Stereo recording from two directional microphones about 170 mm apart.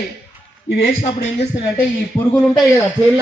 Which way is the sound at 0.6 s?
75° left (ahead or behind).